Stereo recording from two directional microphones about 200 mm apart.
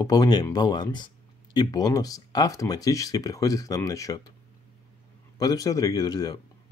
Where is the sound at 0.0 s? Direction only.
20° left (ahead or behind).